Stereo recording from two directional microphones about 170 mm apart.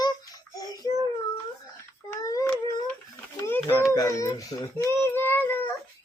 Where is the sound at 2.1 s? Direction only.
20° left (ahead or behind).